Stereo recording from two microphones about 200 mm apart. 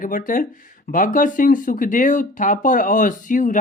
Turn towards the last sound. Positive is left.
turn(degrees=40)  # may be behind; listen again after turning